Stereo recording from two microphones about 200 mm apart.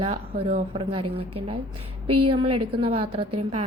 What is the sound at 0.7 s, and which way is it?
Speech, 30° right (ahead or behind).